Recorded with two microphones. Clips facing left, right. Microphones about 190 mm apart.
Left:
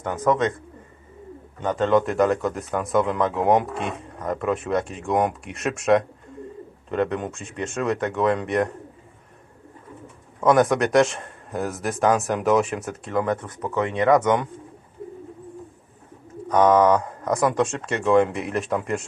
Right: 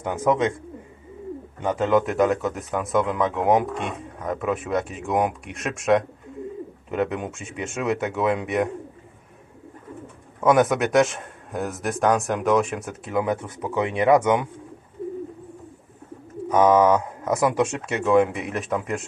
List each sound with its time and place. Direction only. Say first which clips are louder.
0.0 s speech: even; 10° right (ahead or behind)
1.6 s a man's voice: left 1 dB; 10° right (ahead or behind)
10.4 s a man's voice: even; 5° right (ahead or behind)
16.5 s a man's voice: even; 5° right (ahead or behind)